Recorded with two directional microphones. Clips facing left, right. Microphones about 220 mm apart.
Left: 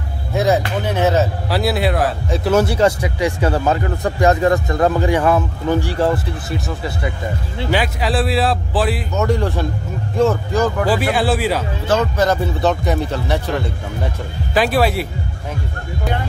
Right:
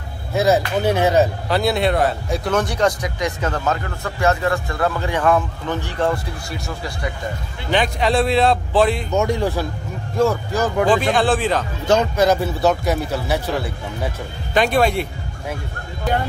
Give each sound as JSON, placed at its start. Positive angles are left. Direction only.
{"t": 0.8, "sound": "speech", "side_deg": -10}
{"t": 1.5, "sound": "speech", "side_deg": 5}
{"t": 3.6, "sound": "speech", "side_deg": 35}
{"t": 5.0, "sound": "speech", "side_deg": 10}
{"t": 7.7, "sound": "speech", "side_deg": 5}
{"t": 9.2, "sound": "speech", "side_deg": -10}
{"t": 10.5, "sound": "speech", "side_deg": 5}
{"t": 11.9, "sound": "speech", "side_deg": -10}